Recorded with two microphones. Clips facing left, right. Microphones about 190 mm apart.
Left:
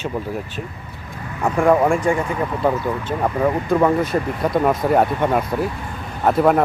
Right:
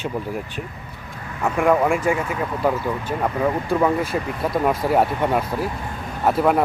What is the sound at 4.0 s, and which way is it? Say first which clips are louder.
Speech: left 3 dB; 5° right (ahead or behind).